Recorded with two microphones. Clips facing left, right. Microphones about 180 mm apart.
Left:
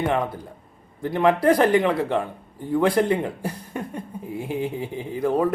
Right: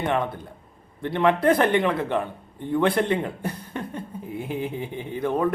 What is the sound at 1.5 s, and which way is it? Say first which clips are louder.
Speech: left 3 dB; 35° left (ahead or behind).